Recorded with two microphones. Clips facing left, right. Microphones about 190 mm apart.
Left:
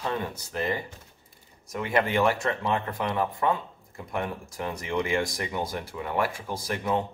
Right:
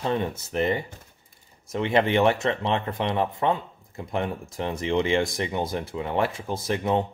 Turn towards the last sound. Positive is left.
turn(degrees=-25)  # may be behind; listen again after turning